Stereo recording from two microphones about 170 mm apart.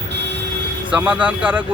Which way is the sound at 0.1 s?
90° right.